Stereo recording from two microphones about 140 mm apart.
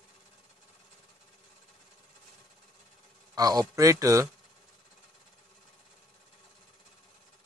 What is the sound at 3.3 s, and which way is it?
Speech, 30° right (ahead or behind).